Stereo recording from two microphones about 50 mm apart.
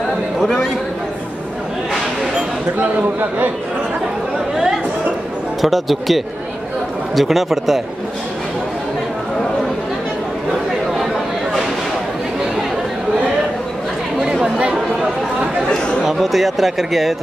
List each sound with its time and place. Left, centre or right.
0.4 s speech: centre
5.6 s speech: centre
14.4 s chatter: centre
16.0 s speech: centre